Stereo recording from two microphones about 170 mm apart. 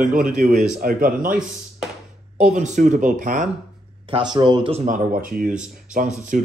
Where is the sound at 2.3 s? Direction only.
45° right (ahead or behind).